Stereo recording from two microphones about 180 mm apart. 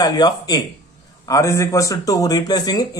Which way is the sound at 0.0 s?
20° left (ahead or behind).